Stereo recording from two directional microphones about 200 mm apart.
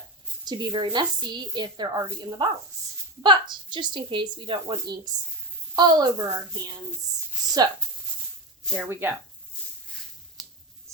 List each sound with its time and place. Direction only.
0.4 s a woman's voice: 20° right (ahead or behind)
8.7 s speech: 10° right (ahead or behind)
10.9 s a sound: 15° right (ahead or behind)